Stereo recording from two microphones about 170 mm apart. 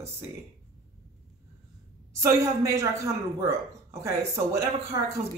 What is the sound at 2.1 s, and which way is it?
Speech, 15° right (ahead or behind).